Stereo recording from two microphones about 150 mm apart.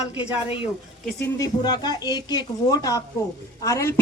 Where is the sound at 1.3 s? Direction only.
25° left (ahead or behind).